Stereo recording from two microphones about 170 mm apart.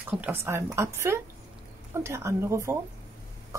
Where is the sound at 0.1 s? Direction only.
15° right (ahead or behind).